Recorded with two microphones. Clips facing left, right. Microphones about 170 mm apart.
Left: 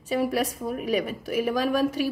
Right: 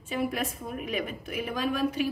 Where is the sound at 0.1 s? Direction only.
40° left (ahead or behind).